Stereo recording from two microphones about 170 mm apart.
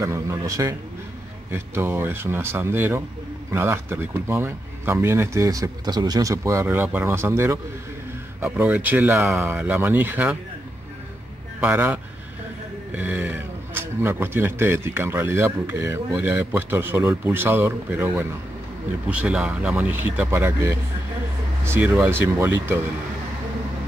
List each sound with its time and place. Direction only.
0.0 s a man's voice: 15° right (ahead or behind)
11.6 s speech: 10° right (ahead or behind)